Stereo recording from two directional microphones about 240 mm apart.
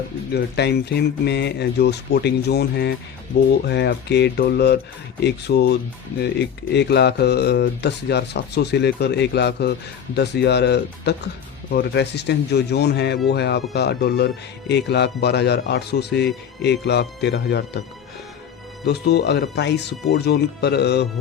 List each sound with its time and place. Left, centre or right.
0.3 s speech: left
18.9 s speech: left